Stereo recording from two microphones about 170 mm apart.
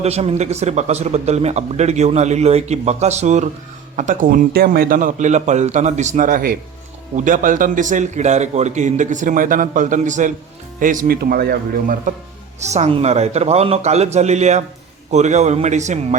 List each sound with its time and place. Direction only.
0.0 s a man's voice: 40° right (ahead or behind); by 12.1 s 55° right (ahead or behind)
12.5 s a man's voice: 40° right (ahead or behind)